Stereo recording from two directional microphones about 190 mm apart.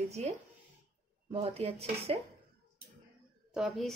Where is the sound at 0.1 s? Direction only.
35° right (ahead or behind).